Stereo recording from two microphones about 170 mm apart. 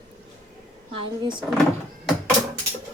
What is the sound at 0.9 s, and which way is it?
Speech, 30° right (ahead or behind).